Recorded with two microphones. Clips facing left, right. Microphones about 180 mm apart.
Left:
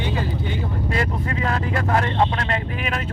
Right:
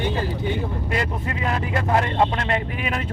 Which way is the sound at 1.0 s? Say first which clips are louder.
Left 3 dB; 20° right (ahead or behind).